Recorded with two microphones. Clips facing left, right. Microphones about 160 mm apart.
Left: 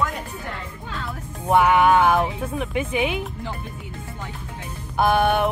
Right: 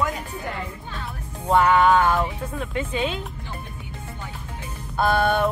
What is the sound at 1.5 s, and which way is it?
Speech, 10° left (ahead or behind).